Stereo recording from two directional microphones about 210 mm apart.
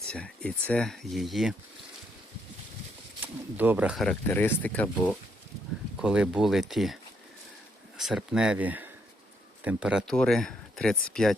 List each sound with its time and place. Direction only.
0.1 s speech: 5° left (ahead or behind)
3.2 s speech: 10° right (ahead or behind); by 5.1 s 10° left (ahead or behind)
6.0 s speech: 5° right (ahead or behind)